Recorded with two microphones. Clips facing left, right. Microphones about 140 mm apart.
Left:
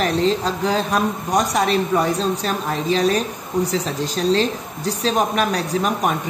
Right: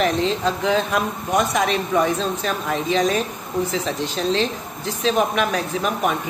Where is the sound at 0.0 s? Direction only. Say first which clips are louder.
Left 1 dB; 35° left (ahead or behind).